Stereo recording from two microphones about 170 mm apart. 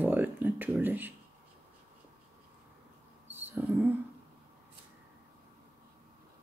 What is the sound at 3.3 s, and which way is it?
Mouse, 10° right (ahead or behind).